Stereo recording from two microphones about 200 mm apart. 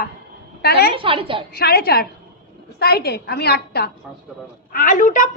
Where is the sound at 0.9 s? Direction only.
25° right (ahead or behind).